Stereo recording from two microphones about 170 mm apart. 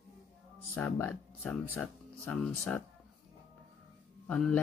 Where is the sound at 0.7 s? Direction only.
15° left (ahead or behind).